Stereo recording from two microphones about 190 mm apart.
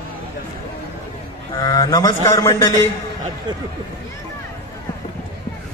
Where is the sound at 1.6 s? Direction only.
20° left (ahead or behind).